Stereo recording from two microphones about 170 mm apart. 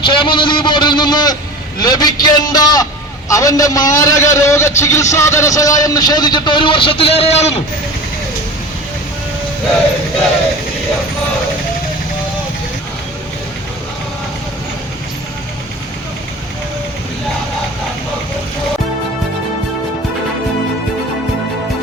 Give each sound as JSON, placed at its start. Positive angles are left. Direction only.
{"t": 0.0, "sound": "vehicle", "side_deg": 30}
{"t": 1.8, "sound": "a man's voice", "side_deg": 25}